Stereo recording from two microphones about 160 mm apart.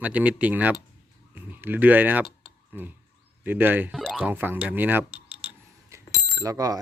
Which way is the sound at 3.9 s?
Centre (ahead or behind).